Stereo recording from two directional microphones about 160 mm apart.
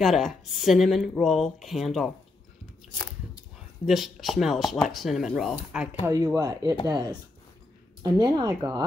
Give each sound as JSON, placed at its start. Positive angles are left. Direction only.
{"t": 0.0, "sound": "speech", "side_deg": 0}
{"t": 3.8, "sound": "speech", "side_deg": 0}
{"t": 6.0, "sound": "speech", "side_deg": -20}
{"t": 8.0, "sound": "speech", "side_deg": -25}